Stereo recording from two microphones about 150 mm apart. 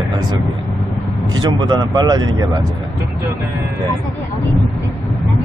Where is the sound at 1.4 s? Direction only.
30° right (ahead or behind).